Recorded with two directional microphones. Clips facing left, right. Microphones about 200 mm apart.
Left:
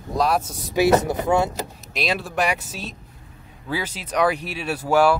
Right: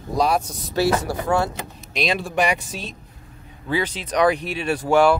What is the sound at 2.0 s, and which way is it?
Speech, 5° left (ahead or behind).